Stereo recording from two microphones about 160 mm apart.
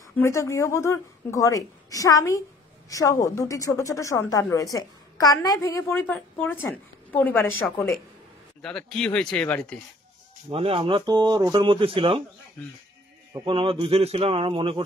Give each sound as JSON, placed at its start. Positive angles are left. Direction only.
{"t": 0.2, "sound": "a woman's voice", "side_deg": 20}
{"t": 8.6, "sound": "speech", "side_deg": 5}
{"t": 10.5, "sound": "speech", "side_deg": -35}
{"t": 13.5, "sound": "speech", "side_deg": -35}